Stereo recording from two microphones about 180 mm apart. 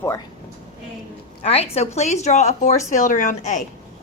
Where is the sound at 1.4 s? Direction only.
35° left (ahead or behind).